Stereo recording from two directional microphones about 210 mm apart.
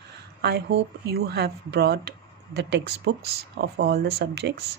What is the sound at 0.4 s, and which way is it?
Speech, 50° right (ahead or behind).